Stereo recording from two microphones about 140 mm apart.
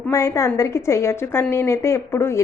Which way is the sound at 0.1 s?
20° left (ahead or behind).